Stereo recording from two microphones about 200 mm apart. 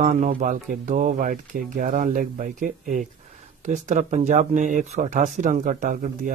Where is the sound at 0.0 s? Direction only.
35° right (ahead or behind).